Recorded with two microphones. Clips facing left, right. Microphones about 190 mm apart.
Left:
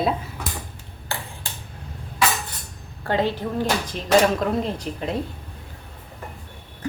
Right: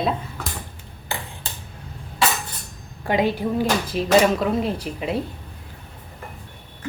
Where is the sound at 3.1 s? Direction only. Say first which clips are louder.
Right 2 dB; 10° right (ahead or behind).